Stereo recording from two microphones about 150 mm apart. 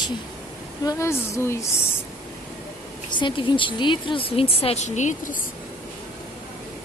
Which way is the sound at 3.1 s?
30° left (ahead or behind).